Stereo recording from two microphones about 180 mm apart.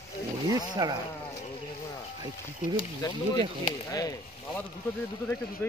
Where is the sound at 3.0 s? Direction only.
20° left (ahead or behind).